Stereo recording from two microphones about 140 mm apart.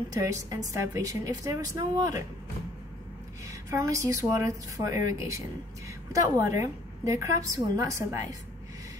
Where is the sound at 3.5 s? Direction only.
25° right (ahead or behind).